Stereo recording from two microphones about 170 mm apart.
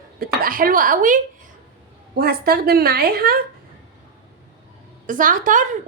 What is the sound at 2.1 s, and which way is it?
A woman's voice, 65° right (ahead or behind).